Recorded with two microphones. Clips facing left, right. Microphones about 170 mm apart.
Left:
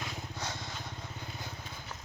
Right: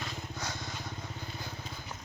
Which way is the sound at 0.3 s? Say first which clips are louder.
Even; 30° left (ahead or behind).